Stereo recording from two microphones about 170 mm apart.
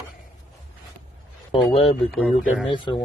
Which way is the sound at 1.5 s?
35° left (ahead or behind).